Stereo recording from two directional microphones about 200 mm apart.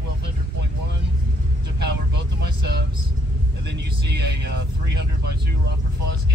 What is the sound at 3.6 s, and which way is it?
Speech, 60° right (ahead or behind).